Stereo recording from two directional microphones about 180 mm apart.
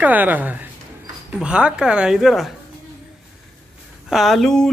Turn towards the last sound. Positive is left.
turn(degrees=5)  # may be behind; listen again after turning